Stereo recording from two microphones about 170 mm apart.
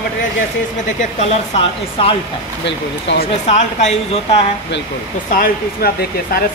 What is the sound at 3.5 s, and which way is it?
Speech, 40° left (ahead or behind).